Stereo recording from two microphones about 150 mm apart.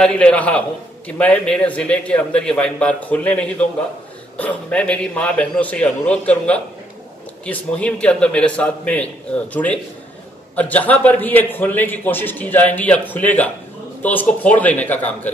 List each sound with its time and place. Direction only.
0.0 s a man's voice: 5° left (ahead or behind)